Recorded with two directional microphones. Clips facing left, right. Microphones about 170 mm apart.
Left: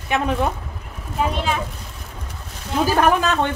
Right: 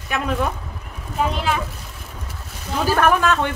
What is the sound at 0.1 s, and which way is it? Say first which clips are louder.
Speech: left 3 dB; 25° left (ahead or behind).